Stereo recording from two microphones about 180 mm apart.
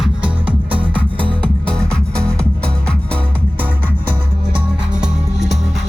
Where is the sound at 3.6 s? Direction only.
10° right (ahead or behind).